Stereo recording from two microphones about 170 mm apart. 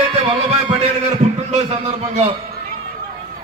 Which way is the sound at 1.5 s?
40° right (ahead or behind).